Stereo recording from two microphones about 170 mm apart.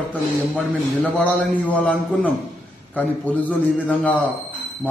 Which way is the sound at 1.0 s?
5° left (ahead or behind).